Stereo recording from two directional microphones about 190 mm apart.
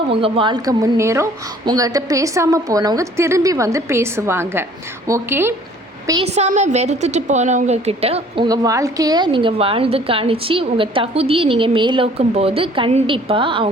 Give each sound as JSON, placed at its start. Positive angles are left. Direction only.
{"t": 0.1, "sound": "a woman's voice", "side_deg": -30}
{"t": 6.2, "sound": "a woman's voice", "side_deg": -35}
{"t": 8.4, "sound": "a woman's voice", "side_deg": -20}